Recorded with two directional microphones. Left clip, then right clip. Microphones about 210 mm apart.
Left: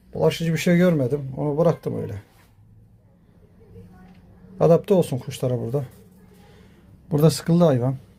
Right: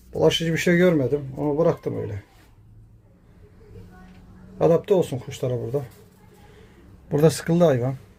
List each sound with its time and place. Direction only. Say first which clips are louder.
0.2 s speech: right 2 dB; 5° left (ahead or behind)
4.5 s speech: left 1 dB; 20° left (ahead or behind)
7.1 s speech: right 1 dB; 10° left (ahead or behind)